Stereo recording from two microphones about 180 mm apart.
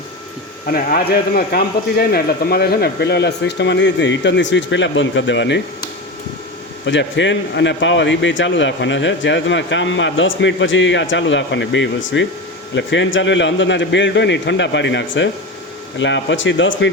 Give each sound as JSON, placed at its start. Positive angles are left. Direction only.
{"t": 0.6, "sound": "speech", "side_deg": 50}
{"t": 6.8, "sound": "a man's voice", "side_deg": 90}